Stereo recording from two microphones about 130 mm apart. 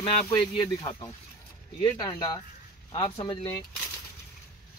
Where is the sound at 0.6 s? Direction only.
25° left (ahead or behind).